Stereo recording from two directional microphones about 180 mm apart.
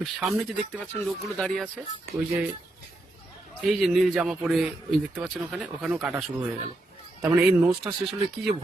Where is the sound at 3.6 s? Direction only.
Centre (ahead or behind).